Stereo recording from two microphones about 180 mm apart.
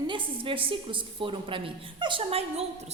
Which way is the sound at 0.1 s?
30° right (ahead or behind).